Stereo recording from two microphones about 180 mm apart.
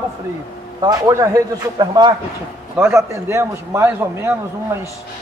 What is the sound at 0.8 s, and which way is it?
A man's voice, 20° right (ahead or behind).